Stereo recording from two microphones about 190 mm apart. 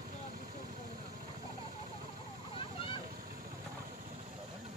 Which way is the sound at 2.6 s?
30° left (ahead or behind).